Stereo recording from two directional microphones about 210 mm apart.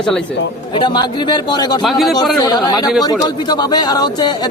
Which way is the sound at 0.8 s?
20° left (ahead or behind).